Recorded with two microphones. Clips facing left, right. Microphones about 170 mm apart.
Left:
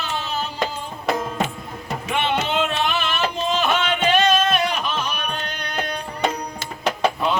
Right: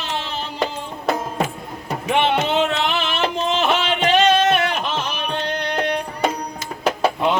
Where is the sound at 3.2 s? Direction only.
25° right (ahead or behind).